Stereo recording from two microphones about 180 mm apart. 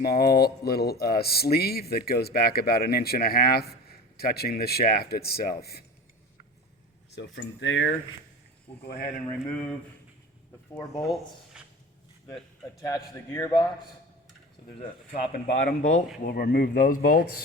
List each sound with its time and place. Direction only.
0.0 s speech: 55° left (ahead or behind)
7.2 s speech: 80° left
8.9 s speech: 55° left (ahead or behind)
9.3 s speech: 10° left (ahead or behind)
11.0 s speech: centre (ahead or behind)
13.3 s a man's voice: 20° left (ahead or behind)
15.5 s speech: 40° left (ahead or behind)
16.3 s speech: 55° left (ahead or behind)